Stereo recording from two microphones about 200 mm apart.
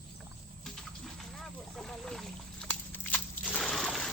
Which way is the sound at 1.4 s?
Centre (ahead or behind).